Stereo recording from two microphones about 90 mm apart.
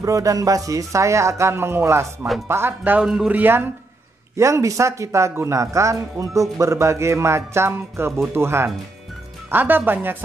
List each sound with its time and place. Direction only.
0.0 s speech: 40° right (ahead or behind); by 3.6 s 20° right (ahead or behind)
4.4 s speech: 35° right (ahead or behind)